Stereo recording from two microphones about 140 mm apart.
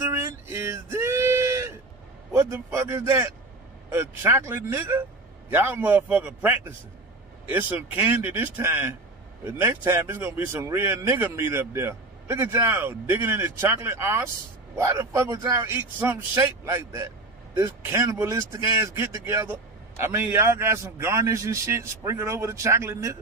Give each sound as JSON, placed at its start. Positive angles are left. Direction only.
{"t": 0.1, "sound": "male singing", "side_deg": -20}
{"t": 2.3, "sound": "a man's voice", "side_deg": -20}